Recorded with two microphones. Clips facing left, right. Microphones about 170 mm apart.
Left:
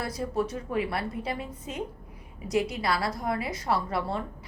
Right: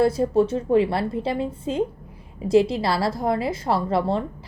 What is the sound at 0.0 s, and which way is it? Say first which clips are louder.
A woman's voice: right 11 dB; 30° right (ahead or behind).